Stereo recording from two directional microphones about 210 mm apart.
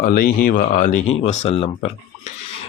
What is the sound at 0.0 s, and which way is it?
Speech, 45° left (ahead or behind).